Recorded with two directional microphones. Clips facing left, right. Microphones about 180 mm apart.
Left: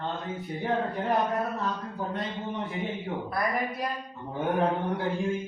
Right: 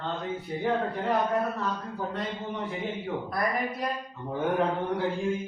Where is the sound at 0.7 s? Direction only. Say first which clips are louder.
Even; 20° left (ahead or behind).